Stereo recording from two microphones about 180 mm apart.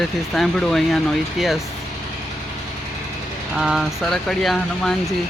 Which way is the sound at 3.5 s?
5° right (ahead or behind).